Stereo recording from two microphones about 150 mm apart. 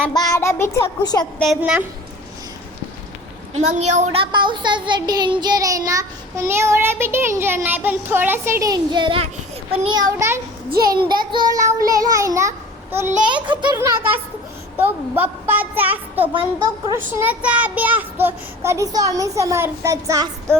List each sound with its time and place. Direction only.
0.1 s a child's voice: 25° left (ahead or behind)
1.4 s a woman's voice: centre (ahead or behind)
3.6 s speech: 50° right (ahead or behind); by 10.2 s 30° right (ahead or behind)
10.7 s a child's voice: 90° right
11.1 s a child's voice: 30° right (ahead or behind)
13.2 s a child's voice: 30° right (ahead or behind)
13.7 s a woman's voice: 15° right (ahead or behind)
16.2 s a child's voice: 35° right (ahead or behind)
16.9 s speech: 15° right (ahead or behind)